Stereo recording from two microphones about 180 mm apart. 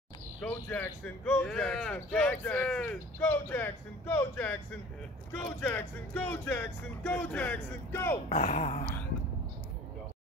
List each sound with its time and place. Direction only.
0.4 s speech: 10° left (ahead or behind)
8.3 s speech: 40° left (ahead or behind)